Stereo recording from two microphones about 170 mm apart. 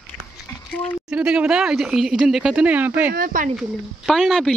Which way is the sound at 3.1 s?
55° right (ahead or behind).